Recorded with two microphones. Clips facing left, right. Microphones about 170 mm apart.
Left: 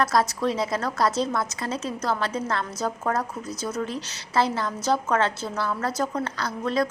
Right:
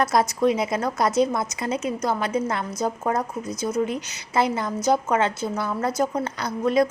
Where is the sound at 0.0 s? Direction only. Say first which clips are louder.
Right 3 dB; 20° right (ahead or behind).